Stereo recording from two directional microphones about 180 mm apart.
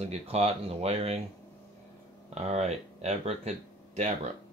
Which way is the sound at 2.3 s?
35° right (ahead or behind).